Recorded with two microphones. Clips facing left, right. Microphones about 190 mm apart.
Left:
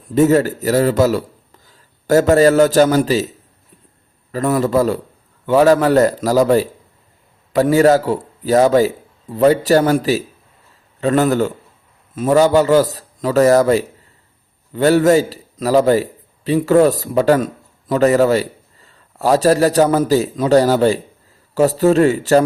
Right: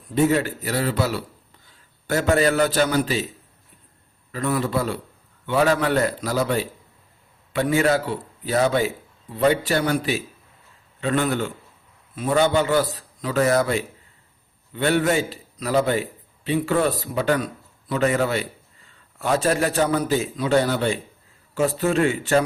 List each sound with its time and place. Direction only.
0.1 s a man's voice: 40° left (ahead or behind)
4.3 s a man's voice: 45° left (ahead or behind)